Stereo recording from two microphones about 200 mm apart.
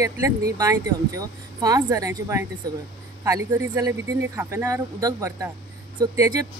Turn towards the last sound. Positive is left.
turn(degrees=-15)  # may be behind; listen again after turning